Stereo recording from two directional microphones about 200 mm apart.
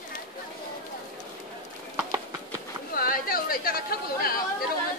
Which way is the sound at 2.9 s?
45° left (ahead or behind).